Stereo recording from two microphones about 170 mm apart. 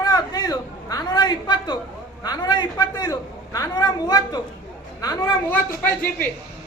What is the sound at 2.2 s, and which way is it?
A man's voice, 25° left (ahead or behind).